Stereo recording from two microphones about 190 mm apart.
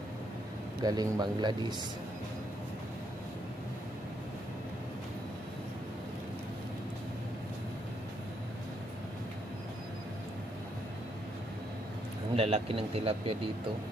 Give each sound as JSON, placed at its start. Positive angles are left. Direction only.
{"t": 0.8, "sound": "a man's voice", "side_deg": -20}
{"t": 12.4, "sound": "a man's voice", "side_deg": -30}